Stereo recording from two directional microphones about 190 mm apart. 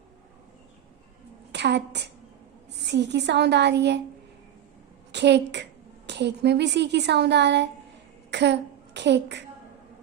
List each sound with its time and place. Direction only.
1.5 s speech: 65° right (ahead or behind)
5.1 s speech: 65° right (ahead or behind)
8.3 s a sound: 65° right (ahead or behind)